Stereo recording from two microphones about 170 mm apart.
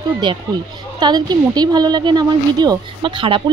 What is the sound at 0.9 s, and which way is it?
A woman's voice, 25° right (ahead or behind).